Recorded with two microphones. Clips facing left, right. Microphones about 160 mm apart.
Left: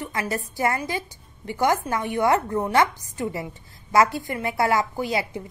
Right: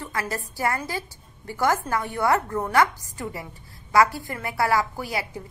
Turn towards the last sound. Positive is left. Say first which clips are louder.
# left 4 dB
turn(degrees=20)  # may be behind; listen again after turning